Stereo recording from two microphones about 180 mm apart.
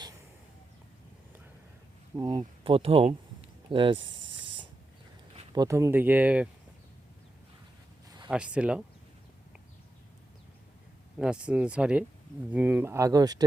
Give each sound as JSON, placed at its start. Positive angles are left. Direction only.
{"t": 2.1, "sound": "speech", "side_deg": -25}
{"t": 3.7, "sound": "snake", "side_deg": -30}
{"t": 5.5, "sound": "speech", "side_deg": -15}
{"t": 8.3, "sound": "speech", "side_deg": -5}
{"t": 11.2, "sound": "speech", "side_deg": -5}